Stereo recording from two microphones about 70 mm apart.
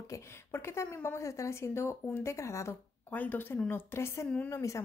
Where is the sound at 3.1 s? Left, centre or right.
Left.